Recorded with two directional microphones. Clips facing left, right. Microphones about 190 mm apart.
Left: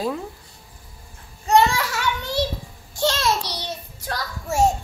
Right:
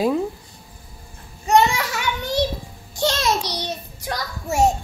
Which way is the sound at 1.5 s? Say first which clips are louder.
Right 1 dB; 15° right (ahead or behind).